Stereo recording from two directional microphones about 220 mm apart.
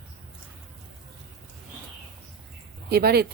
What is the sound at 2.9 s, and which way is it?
Speech, 45° right (ahead or behind).